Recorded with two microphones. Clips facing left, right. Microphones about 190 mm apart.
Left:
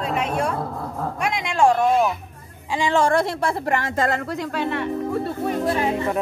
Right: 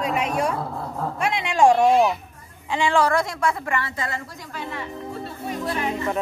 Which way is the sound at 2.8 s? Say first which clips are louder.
Left 1 dB; 25° left (ahead or behind).